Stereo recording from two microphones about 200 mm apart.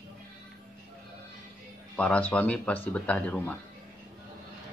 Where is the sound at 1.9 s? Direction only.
5° left (ahead or behind).